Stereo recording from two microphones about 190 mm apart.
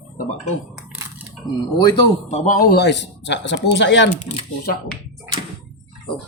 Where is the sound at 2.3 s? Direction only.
35° left (ahead or behind).